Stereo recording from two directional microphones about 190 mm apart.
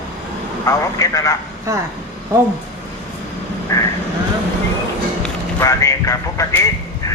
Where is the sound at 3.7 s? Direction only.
15° left (ahead or behind).